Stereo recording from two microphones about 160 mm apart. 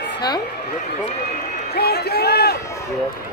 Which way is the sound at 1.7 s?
90° left.